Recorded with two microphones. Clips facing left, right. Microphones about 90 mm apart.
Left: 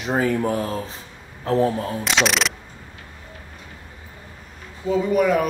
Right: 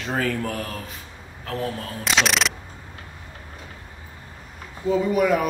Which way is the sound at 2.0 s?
Centre (ahead or behind).